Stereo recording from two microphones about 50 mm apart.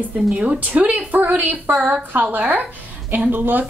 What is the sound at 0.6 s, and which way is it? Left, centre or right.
Speech, right.